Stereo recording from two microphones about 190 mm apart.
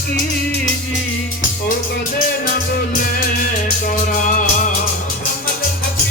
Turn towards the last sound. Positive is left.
turn(degrees=40)  # may be behind; listen again after turning